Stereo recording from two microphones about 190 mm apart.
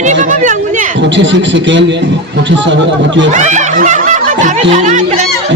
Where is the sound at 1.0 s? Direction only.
75° right (ahead or behind).